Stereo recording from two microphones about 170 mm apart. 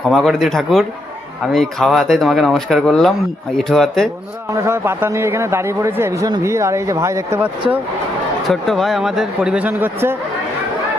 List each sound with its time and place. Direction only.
0.1 s speech: centre (ahead or behind)
4.5 s speech: 15° right (ahead or behind)
8.4 s speech: centre (ahead or behind)